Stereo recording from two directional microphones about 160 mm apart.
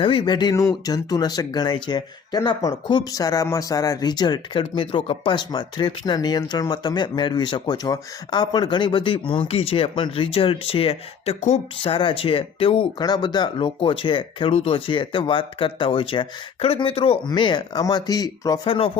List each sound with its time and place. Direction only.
0.0 s speech: 30° left (ahead or behind)
11.8 s speech: 35° left (ahead or behind)